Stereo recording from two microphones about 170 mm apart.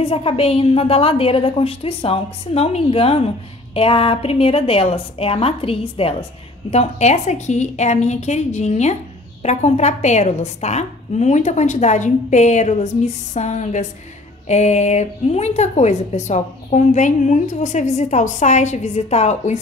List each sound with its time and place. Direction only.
0.0 s a woman's voice: 35° left (ahead or behind)